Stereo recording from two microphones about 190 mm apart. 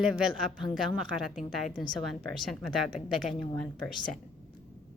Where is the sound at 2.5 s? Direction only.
Centre (ahead or behind).